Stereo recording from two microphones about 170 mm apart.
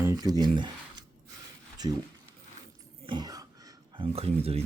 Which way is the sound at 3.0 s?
25° right (ahead or behind).